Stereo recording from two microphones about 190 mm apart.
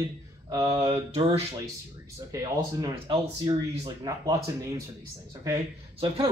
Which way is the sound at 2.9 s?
30° right (ahead or behind).